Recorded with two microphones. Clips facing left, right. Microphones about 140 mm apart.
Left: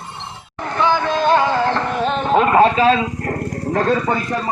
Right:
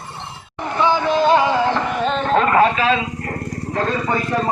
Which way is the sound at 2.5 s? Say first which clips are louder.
Left 5 dB; 30° left (ahead or behind).